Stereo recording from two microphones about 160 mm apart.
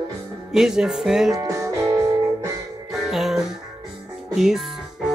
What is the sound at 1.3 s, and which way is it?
Music, 20° right (ahead or behind).